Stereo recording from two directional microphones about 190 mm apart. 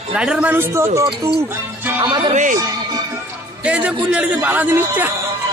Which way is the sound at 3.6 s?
5° right (ahead or behind).